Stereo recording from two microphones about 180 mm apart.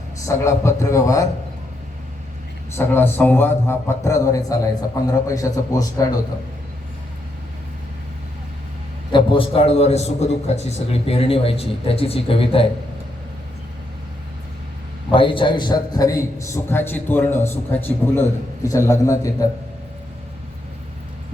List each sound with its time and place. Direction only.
0.3 s a man's voice: 15° left (ahead or behind)
2.7 s a man's voice: 10° left (ahead or behind)
9.1 s a man's voice: 30° left (ahead or behind)
15.1 s a man's voice: 30° left (ahead or behind)